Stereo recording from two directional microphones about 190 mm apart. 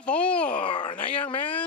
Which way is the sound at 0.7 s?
25° left (ahead or behind).